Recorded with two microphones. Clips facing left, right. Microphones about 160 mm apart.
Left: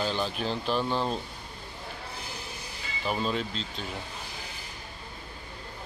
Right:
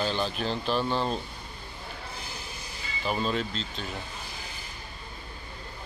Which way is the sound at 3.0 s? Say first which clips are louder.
Right 1 dB; 5° left (ahead or behind).